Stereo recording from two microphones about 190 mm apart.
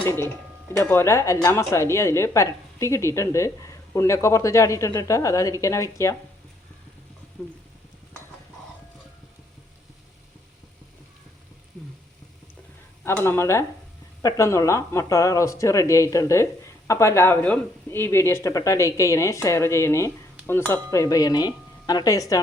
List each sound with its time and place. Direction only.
0.8 s speech: 15° left (ahead or behind)
7.4 s speech: 5° left (ahead or behind)
13.1 s speech: 15° left (ahead or behind)
20.5 s a sound: 10° left (ahead or behind)